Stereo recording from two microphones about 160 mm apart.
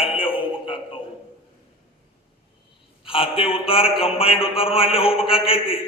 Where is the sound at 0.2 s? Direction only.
35° left (ahead or behind).